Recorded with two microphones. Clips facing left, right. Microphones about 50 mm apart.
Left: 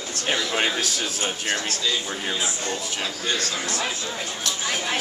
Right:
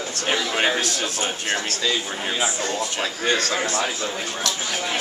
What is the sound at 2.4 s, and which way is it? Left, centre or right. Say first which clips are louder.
Speech: right 4 dB; right.